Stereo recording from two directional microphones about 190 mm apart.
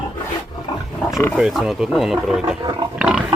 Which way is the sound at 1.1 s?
15° left (ahead or behind).